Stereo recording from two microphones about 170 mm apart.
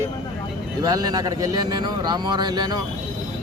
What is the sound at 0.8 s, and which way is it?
A man's voice, 20° right (ahead or behind).